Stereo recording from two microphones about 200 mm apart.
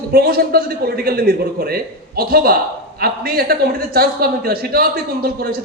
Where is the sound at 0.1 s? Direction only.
50° right (ahead or behind).